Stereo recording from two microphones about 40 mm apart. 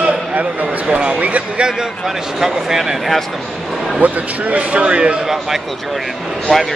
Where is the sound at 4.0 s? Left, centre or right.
Right.